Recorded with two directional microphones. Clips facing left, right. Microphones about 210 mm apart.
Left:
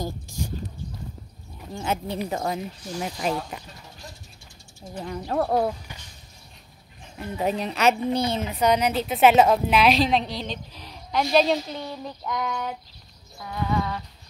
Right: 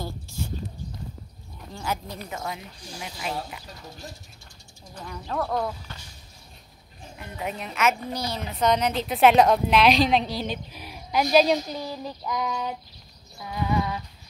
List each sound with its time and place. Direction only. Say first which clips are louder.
0.0 s a sound: left 3 dB; 15° left (ahead or behind)
1.7 s speech: left 4 dB; 25° left (ahead or behind)
2.2 s a woman's voice: left 6 dB; 40° left (ahead or behind)
4.9 s a woman's voice: left 5 dB; 35° left (ahead or behind)
7.2 s a woman's voice: left 7 dB; 35° left (ahead or behind)
8.5 s a woman's voice: right 2 dB; 10° left (ahead or behind)
13.4 s a sound: even; 10° right (ahead or behind)